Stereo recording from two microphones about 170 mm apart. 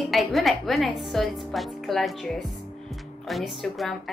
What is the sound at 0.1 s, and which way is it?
A woman's voice, centre (ahead or behind).